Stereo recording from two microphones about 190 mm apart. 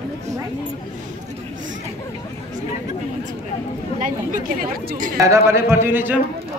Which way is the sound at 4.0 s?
45° right (ahead or behind).